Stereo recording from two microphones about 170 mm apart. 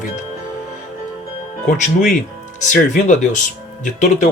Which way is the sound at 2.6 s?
50° left (ahead or behind).